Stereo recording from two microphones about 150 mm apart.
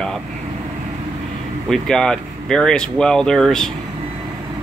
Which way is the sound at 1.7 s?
5° left (ahead or behind).